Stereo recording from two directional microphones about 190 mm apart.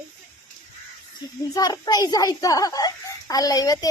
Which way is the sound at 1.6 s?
20° left (ahead or behind).